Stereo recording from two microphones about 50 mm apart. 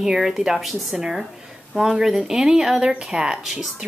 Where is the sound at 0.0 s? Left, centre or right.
Centre.